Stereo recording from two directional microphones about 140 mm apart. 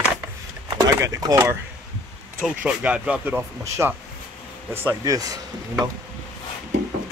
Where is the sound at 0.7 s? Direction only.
25° right (ahead or behind).